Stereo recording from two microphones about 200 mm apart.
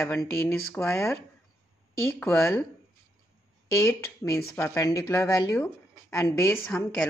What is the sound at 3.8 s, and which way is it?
Speech, 10° left (ahead or behind).